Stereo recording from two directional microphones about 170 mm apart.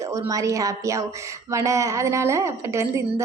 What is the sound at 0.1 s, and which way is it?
A woman's voice, 20° right (ahead or behind).